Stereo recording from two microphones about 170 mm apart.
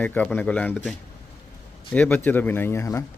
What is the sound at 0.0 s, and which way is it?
Speech, 10° left (ahead or behind).